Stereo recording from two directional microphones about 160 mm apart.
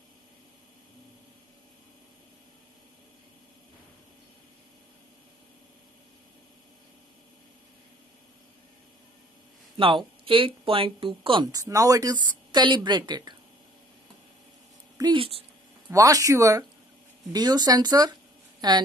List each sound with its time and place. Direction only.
9.8 s speech: 35° right (ahead or behind)
15.0 s speech: 30° right (ahead or behind)
15.9 s speech: 20° right (ahead or behind)